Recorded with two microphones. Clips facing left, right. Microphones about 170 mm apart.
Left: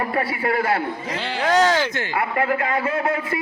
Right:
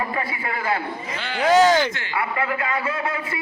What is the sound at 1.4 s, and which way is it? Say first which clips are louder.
Speech: right 3 dB; centre (ahead or behind).